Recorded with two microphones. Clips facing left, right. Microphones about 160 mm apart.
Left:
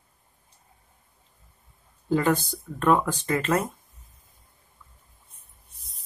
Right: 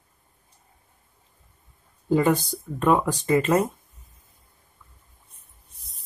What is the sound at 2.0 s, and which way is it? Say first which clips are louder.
Speech: right 2 dB; 15° right (ahead or behind).